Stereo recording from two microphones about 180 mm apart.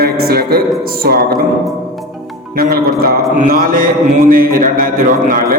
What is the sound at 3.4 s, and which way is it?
Mantra, 50° right (ahead or behind).